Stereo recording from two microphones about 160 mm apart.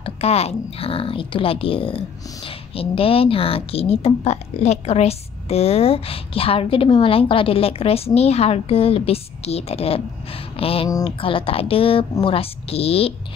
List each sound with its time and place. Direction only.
0.0 s speech: 40° left (ahead or behind)